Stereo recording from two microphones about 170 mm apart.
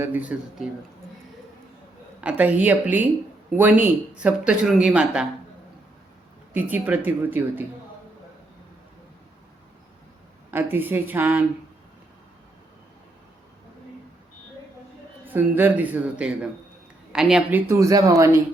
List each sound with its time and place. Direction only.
0.0 s speech: 10° right (ahead or behind)
2.2 s speech: 10° right (ahead or behind)
6.5 s speech: 10° right (ahead or behind)
10.5 s speech: 10° right (ahead or behind)
15.3 s speech: 10° right (ahead or behind)
17.7 s speech: 20° right (ahead or behind)